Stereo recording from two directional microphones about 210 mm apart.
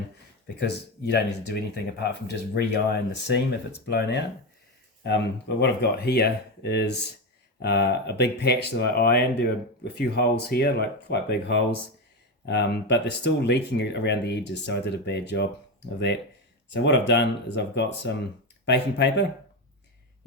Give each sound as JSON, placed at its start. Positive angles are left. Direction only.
{"t": 0.4, "sound": "speech", "side_deg": 55}
{"t": 16.7, "sound": "speech", "side_deg": 55}